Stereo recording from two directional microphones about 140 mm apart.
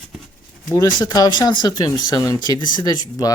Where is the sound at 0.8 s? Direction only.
30° left (ahead or behind).